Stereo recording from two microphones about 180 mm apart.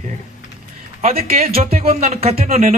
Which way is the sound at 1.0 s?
35° right (ahead or behind).